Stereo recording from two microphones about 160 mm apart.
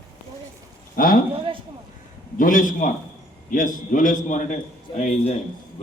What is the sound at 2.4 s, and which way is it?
A man's voice, 55° left (ahead or behind).